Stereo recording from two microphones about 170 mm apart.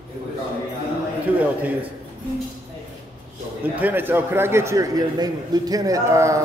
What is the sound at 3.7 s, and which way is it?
A man's voice, 10° right (ahead or behind).